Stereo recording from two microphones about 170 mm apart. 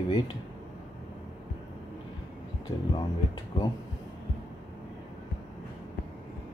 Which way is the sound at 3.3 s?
25° left (ahead or behind).